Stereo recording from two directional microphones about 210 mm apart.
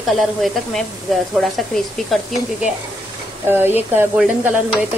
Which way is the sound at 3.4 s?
10° right (ahead or behind).